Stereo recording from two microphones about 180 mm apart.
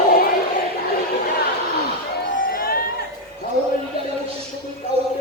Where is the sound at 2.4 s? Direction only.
50° left (ahead or behind).